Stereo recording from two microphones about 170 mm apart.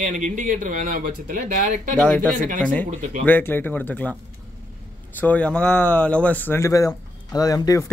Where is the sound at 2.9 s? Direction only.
45° right (ahead or behind).